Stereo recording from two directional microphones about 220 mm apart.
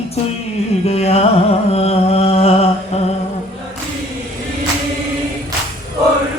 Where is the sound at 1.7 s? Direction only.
30° left (ahead or behind).